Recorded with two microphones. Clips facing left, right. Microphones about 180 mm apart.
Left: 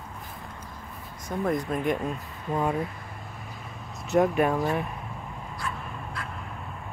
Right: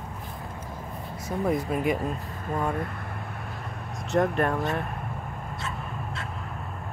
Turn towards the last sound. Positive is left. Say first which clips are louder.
# right 2 dB
turn(degrees=-25)  # may be behind; listen again after turning